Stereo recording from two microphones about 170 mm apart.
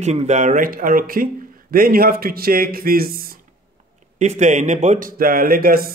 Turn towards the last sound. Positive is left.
turn(degrees=-60)  # may be behind; listen again after turning